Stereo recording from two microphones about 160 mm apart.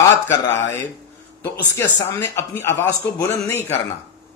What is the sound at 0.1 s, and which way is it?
Speech, 15° left (ahead or behind).